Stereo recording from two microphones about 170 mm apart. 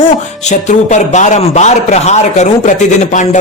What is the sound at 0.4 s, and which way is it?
A man's voice, 45° left (ahead or behind).